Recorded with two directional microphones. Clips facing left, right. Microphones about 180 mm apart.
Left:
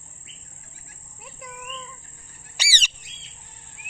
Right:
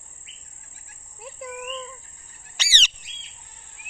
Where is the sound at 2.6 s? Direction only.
10° left (ahead or behind).